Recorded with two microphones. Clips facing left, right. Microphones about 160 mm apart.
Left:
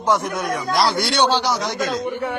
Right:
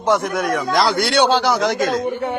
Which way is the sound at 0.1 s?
55° right (ahead or behind).